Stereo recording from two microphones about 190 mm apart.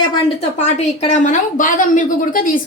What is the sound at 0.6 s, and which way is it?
A woman's voice, 35° left (ahead or behind).